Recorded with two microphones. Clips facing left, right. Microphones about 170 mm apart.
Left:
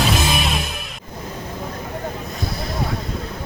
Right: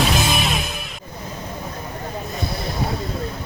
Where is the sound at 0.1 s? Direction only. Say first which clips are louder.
Even; centre (ahead or behind).